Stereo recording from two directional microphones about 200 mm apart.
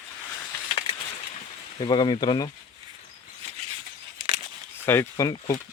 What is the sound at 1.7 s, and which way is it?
Speech, 25° left (ahead or behind).